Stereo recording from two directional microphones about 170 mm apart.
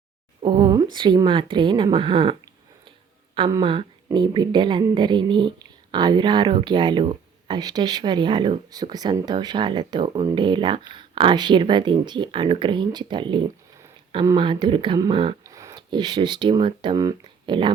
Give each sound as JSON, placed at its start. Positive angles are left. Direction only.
{"t": 0.4, "sound": "speech", "side_deg": -25}
{"t": 3.6, "sound": "speech", "side_deg": -30}